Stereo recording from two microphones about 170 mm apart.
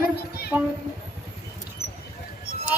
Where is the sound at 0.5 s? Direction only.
10° right (ahead or behind).